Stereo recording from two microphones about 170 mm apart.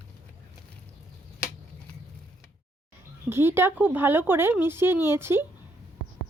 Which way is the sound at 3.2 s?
15° right (ahead or behind).